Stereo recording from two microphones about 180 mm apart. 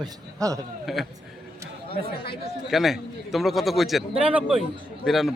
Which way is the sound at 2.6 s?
Centre (ahead or behind).